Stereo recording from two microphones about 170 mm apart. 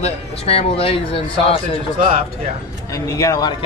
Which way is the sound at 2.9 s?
20° left (ahead or behind).